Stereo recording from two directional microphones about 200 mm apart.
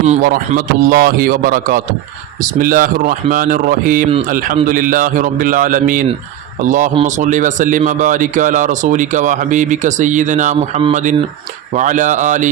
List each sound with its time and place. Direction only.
0.2 s a man's voice: 45° right (ahead or behind)